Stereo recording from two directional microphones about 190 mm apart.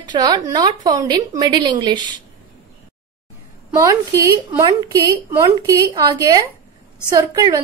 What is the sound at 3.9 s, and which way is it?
A woman's voice, 15° right (ahead or behind).